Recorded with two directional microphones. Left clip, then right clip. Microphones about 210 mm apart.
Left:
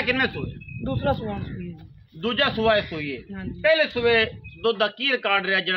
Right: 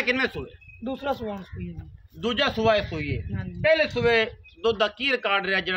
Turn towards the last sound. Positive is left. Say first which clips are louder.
# left 2 dB
turn(degrees=0)  # may be behind; listen again after turning